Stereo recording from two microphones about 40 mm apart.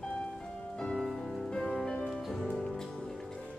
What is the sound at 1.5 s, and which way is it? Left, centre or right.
Music, left.